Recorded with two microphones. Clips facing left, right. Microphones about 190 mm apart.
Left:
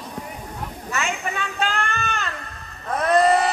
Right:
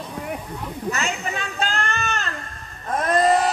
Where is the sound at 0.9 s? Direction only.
40° right (ahead or behind).